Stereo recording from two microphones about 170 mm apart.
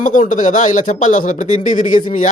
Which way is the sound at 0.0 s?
50° left (ahead or behind).